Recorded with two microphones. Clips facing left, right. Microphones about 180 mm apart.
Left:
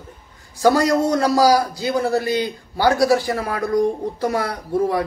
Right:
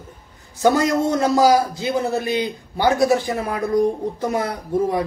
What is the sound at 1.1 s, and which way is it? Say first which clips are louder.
A man's voice: right 2 dB; 20° right (ahead or behind).